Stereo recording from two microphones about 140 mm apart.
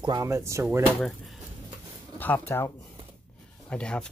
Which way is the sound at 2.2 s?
15° left (ahead or behind).